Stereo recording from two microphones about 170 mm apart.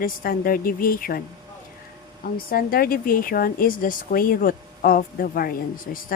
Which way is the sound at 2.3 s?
60° left (ahead or behind).